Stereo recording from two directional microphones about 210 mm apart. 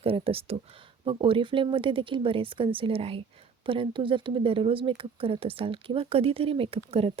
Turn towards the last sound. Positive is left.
turn(degrees=-30)  # may be behind; listen again after turning